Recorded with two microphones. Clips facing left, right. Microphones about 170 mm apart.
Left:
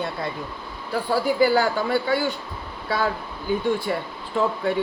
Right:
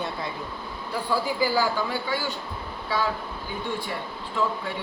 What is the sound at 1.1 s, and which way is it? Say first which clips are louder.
A man's voice: left 5 dB; 55° left (ahead or behind).